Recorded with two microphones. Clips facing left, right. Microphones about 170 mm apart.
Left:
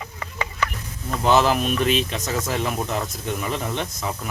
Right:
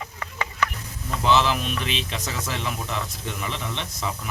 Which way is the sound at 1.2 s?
45° left (ahead or behind).